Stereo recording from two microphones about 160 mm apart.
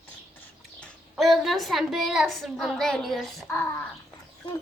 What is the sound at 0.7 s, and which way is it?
A woman's voice, 5° left (ahead or behind).